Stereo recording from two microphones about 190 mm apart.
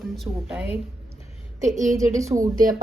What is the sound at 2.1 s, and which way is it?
Speech, 15° right (ahead or behind).